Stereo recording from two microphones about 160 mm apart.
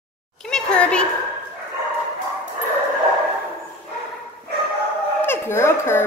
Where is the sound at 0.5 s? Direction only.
5° left (ahead or behind).